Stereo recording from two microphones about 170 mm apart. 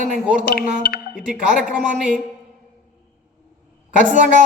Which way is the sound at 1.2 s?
5° right (ahead or behind).